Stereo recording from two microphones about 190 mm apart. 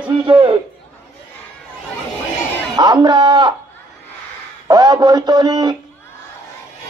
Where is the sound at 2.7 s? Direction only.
20° right (ahead or behind).